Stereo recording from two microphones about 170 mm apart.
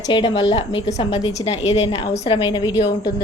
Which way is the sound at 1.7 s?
35° left (ahead or behind).